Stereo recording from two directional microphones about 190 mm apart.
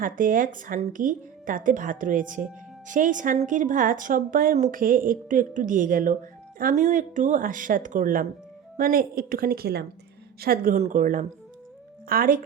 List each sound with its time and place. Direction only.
0.0 s speech: 45° right (ahead or behind)